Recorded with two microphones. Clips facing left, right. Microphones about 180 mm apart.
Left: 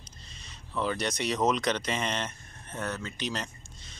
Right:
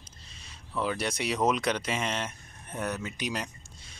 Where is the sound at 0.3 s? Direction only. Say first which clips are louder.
Even; 5° right (ahead or behind).